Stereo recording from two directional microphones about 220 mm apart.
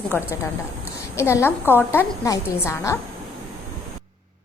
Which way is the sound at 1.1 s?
10° left (ahead or behind).